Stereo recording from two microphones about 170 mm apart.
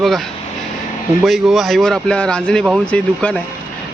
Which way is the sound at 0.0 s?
Centre (ahead or behind).